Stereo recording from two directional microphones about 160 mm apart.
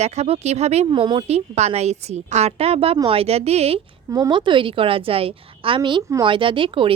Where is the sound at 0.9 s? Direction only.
30° right (ahead or behind).